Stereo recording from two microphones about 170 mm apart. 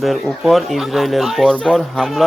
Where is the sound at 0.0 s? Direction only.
Centre (ahead or behind).